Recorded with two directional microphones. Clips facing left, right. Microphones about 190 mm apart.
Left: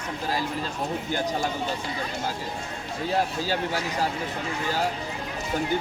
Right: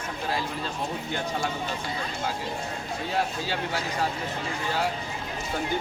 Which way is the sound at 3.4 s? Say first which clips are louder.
Left 3 dB; 40° left (ahead or behind).